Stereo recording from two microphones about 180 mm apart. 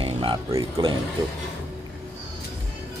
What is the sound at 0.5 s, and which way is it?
Speech, 20° right (ahead or behind).